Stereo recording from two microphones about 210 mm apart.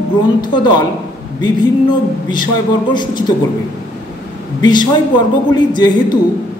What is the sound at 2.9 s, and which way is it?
Speech, 20° left (ahead or behind).